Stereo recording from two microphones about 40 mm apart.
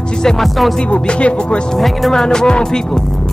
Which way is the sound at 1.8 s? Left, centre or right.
Centre.